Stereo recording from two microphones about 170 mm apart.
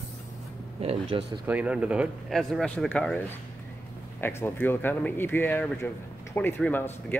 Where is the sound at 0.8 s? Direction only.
35° right (ahead or behind).